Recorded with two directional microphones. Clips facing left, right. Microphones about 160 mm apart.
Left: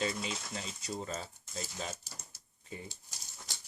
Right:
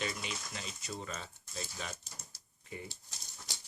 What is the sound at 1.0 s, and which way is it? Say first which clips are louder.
Speech: left 4 dB; 30° left (ahead or behind).